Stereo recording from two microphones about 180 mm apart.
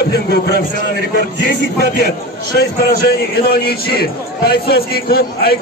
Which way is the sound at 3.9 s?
60° left (ahead or behind).